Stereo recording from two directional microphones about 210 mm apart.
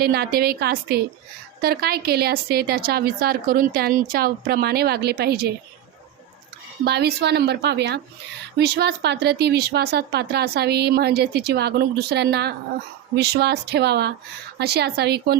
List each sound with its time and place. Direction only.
0.0 s speech: 45° right (ahead or behind)
6.8 s speech: 50° right (ahead or behind)